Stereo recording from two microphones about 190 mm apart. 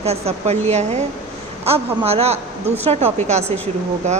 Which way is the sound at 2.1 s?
35° right (ahead or behind).